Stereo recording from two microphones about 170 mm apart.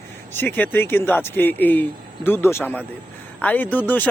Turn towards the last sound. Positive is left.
turn(degrees=10)  # may be behind; listen again after turning